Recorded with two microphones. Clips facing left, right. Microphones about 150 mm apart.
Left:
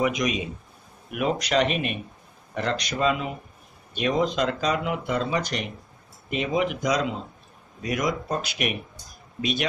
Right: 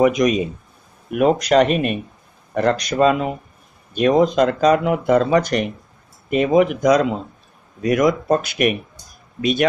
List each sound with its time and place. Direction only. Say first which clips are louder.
0.0 s speech: right 9 dB; 45° right (ahead or behind)